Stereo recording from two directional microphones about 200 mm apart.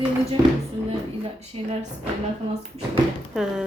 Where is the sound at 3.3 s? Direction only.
5° right (ahead or behind).